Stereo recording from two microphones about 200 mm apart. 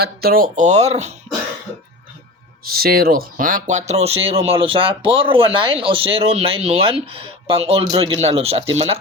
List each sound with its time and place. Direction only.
0.0 s speech: 50° right (ahead or behind); by 1.1 s 35° right (ahead or behind)
2.7 s speech: 50° right (ahead or behind); by 8.6 s 30° right (ahead or behind)